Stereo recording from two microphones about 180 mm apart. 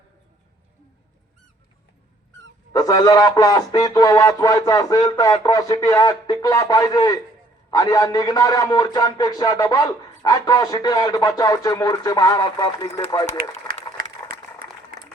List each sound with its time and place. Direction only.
2.7 s a man's voice: 20° left (ahead or behind)